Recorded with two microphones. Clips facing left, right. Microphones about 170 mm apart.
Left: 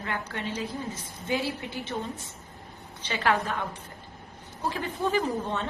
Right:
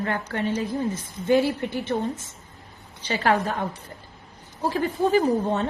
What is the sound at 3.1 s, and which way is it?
A woman's voice, 35° right (ahead or behind).